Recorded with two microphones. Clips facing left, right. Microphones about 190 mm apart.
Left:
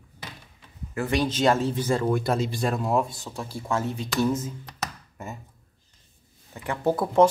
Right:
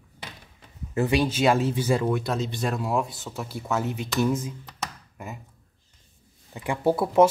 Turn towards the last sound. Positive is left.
turn(degrees=-10)  # may be behind; listen again after turning